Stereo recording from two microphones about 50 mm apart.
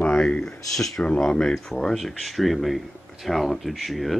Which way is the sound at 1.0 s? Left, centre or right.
Centre.